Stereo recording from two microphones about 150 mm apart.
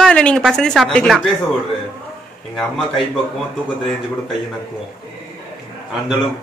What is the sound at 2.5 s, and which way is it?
Speech, centre (ahead or behind).